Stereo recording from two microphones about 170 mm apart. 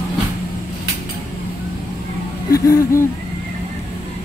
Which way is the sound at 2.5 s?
20° left (ahead or behind).